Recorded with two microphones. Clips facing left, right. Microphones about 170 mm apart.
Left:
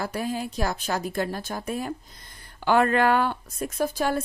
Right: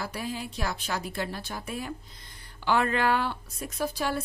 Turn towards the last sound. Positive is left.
turn(degrees=50)  # may be behind; listen again after turning